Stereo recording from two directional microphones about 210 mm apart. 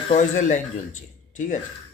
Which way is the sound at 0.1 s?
35° left (ahead or behind).